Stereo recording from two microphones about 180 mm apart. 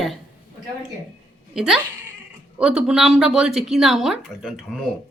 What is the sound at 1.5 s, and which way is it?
Speech, 5° right (ahead or behind).